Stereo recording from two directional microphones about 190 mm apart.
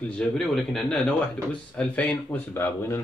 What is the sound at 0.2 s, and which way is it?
A man's voice, centre (ahead or behind).